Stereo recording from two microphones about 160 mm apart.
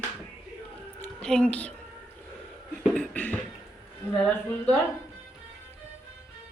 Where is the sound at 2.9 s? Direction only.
10° left (ahead or behind).